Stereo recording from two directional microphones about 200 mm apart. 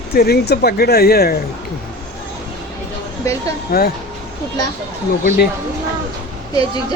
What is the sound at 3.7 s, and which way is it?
Speech, 50° left (ahead or behind).